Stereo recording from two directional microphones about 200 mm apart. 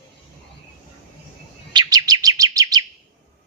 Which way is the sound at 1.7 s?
20° right (ahead or behind).